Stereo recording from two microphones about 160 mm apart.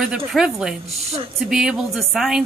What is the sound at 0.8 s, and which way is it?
Speech, 40° right (ahead or behind).